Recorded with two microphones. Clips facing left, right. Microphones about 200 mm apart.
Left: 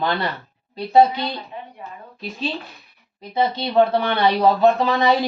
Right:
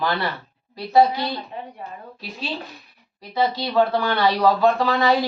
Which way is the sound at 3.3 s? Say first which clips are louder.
Left 2 dB; 20° left (ahead or behind).